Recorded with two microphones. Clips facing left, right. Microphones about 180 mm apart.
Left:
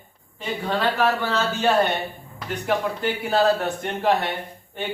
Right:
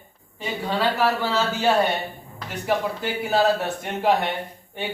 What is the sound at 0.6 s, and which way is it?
Speech, 10° right (ahead or behind).